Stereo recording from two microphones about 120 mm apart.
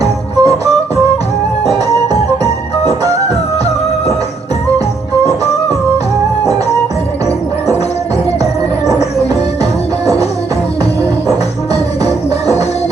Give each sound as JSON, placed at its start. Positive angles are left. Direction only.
{"t": 0.3, "sound": "music", "side_deg": -30}
{"t": 11.7, "sound": "music", "side_deg": 60}